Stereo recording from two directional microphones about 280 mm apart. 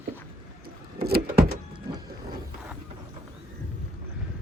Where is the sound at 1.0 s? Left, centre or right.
Right.